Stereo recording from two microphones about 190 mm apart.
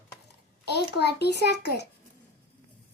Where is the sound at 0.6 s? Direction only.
60° left (ahead or behind).